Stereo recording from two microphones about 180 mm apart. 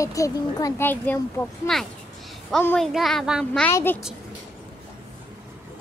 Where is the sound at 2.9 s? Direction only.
Centre (ahead or behind).